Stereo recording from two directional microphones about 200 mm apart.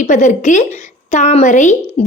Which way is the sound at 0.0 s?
35° left (ahead or behind).